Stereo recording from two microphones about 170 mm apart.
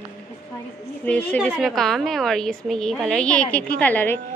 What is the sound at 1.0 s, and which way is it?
A woman's voice, 10° left (ahead or behind).